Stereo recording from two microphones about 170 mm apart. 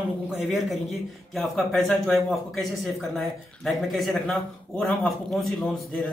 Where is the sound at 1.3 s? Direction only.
Centre (ahead or behind).